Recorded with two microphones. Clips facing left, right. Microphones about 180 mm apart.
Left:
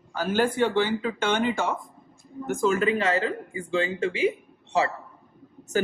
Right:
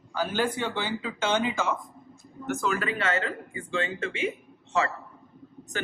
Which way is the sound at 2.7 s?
35° left (ahead or behind).